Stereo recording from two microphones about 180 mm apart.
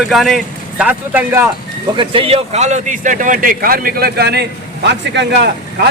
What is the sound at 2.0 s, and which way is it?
A man's voice, 30° right (ahead or behind).